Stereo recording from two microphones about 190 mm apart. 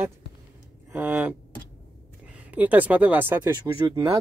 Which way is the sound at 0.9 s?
10° right (ahead or behind).